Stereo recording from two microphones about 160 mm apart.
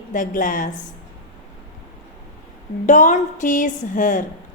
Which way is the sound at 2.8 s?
50° left (ahead or behind).